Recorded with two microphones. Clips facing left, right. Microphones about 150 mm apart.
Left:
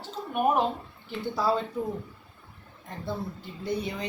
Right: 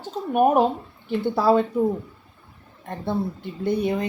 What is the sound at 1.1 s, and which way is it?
Speech, 60° right (ahead or behind).